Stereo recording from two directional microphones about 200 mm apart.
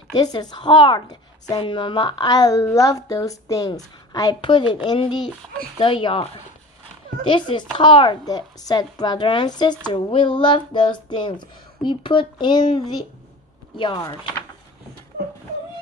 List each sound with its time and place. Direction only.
0.1 s a woman's voice: 20° left (ahead or behind)